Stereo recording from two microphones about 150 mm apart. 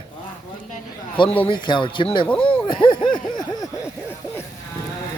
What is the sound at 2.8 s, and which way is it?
Speech, 35° left (ahead or behind).